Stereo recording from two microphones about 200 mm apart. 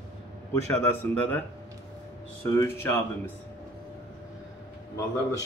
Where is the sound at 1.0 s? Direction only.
10° left (ahead or behind).